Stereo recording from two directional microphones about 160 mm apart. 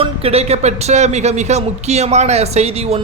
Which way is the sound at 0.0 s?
40° right (ahead or behind).